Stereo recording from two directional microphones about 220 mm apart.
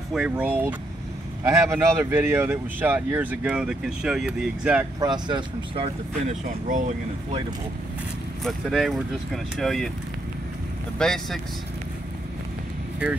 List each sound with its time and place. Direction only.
0.1 s speech: 5° right (ahead or behind)
5.0 s speech: 20° right (ahead or behind)
8.5 s speech: centre (ahead or behind)
11.0 s speech: centre (ahead or behind)